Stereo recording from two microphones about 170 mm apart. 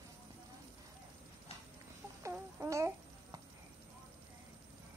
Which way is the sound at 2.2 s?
15° right (ahead or behind).